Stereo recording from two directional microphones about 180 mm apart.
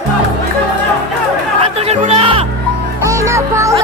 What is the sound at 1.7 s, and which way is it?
Music, 35° right (ahead or behind).